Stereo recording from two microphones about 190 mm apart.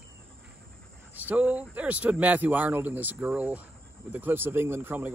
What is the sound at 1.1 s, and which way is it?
Speech, 10° right (ahead or behind).